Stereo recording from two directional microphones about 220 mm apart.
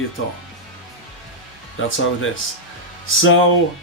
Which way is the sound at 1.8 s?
60° left (ahead or behind).